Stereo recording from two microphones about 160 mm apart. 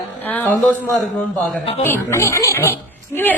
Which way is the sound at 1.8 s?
15° left (ahead or behind).